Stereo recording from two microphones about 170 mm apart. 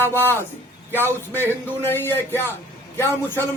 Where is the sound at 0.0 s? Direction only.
10° left (ahead or behind).